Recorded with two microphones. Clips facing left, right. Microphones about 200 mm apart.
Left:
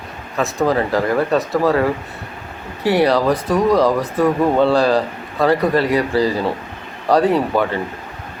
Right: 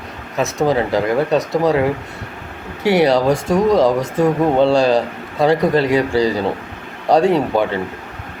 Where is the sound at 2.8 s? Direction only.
Centre (ahead or behind).